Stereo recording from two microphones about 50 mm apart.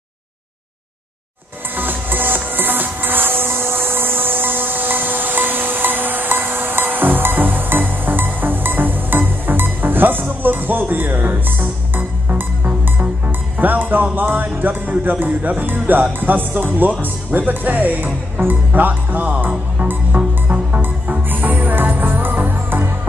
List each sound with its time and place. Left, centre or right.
1.8 s music: right
13.6 s speech: right
19.5 s music: right